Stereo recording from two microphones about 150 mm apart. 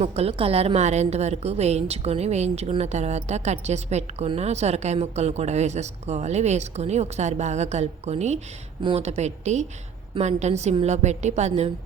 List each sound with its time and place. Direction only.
0.0 s a woman's voice: 40° right (ahead or behind)